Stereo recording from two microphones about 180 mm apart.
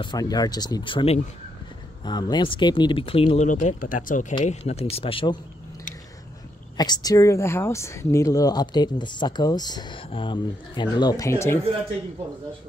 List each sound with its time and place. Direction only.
0.0 s speech: 20° left (ahead or behind)
2.0 s speech: 25° left (ahead or behind)
3.4 s speech: 45° left (ahead or behind)
4.5 s speech: 35° left (ahead or behind)
6.8 s speech: 20° left (ahead or behind)